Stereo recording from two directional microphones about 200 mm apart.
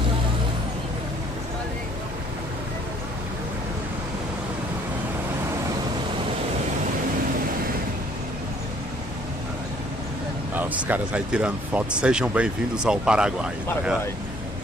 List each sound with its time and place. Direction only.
10.5 s speech: 10° right (ahead or behind)